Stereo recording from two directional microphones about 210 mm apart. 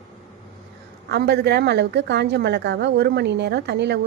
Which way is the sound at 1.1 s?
50° right (ahead or behind).